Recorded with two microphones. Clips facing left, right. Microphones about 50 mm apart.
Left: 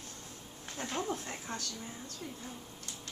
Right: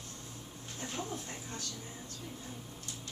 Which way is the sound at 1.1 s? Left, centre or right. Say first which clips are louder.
Left 4 dB; left.